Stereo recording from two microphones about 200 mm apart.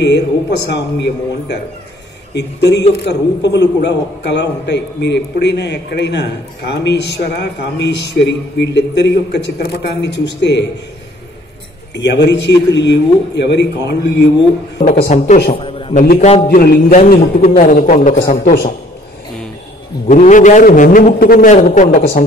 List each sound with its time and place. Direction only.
0.7 s a man's voice: 60° left (ahead or behind)
11.9 s a man's voice: 60° left (ahead or behind)
14.8 s a man's voice: 45° left (ahead or behind)
15.5 s a sound: 30° left (ahead or behind)
16.0 s a man's voice: 35° left (ahead or behind)
16.4 s a man's voice: 50° left (ahead or behind)
20.1 s a man's voice: 40° left (ahead or behind)